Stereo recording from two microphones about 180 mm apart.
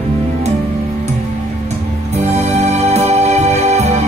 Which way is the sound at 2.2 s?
35° right (ahead or behind).